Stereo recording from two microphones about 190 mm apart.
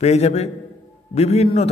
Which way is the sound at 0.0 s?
35° left (ahead or behind).